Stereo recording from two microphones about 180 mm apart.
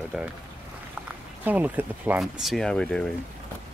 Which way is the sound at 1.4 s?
10° right (ahead or behind).